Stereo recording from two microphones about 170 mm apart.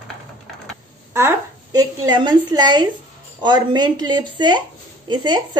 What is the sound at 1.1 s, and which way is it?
A woman's voice, 20° right (ahead or behind).